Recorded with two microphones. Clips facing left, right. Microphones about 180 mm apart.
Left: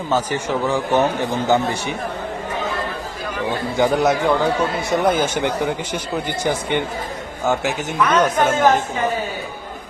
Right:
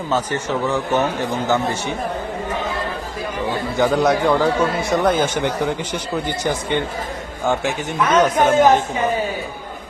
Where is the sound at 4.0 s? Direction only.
Centre (ahead or behind).